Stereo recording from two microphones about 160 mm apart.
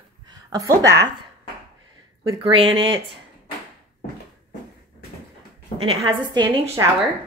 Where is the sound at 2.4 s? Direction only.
35° right (ahead or behind).